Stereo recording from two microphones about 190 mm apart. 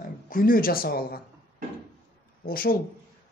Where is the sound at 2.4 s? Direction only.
50° left (ahead or behind).